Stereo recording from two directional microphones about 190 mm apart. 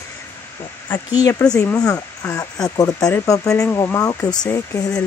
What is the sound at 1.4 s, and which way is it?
Speech, 5° left (ahead or behind).